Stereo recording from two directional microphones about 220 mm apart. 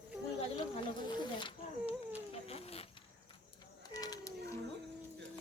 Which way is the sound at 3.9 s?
15° left (ahead or behind).